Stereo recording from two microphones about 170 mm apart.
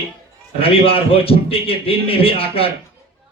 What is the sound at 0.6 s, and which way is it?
Speech, 35° left (ahead or behind).